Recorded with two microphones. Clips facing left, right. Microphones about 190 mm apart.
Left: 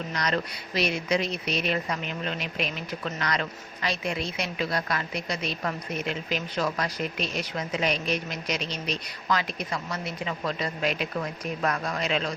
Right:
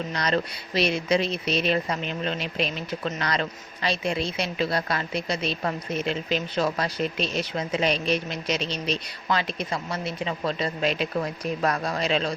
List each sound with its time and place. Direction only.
0.1 s a woman's voice: 30° right (ahead or behind)